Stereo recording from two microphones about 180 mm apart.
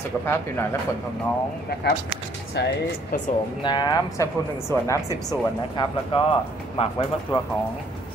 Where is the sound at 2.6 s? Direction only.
70° left (ahead or behind).